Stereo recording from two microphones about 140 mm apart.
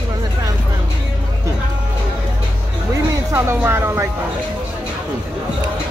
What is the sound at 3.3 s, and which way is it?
Speech, 20° right (ahead or behind).